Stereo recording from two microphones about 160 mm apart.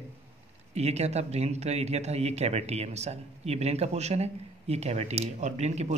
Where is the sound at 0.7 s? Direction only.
45° right (ahead or behind).